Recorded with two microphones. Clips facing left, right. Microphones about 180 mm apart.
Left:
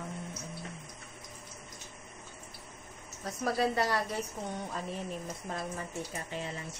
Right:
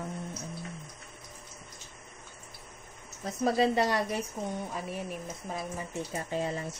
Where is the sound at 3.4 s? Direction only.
20° right (ahead or behind).